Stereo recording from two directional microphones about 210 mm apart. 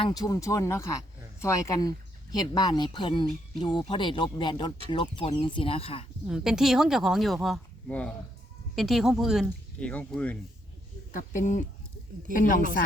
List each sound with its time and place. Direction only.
0.0 s speech: 15° left (ahead or behind)
6.2 s speech: 5° right (ahead or behind)
11.1 s speech: 40° left (ahead or behind)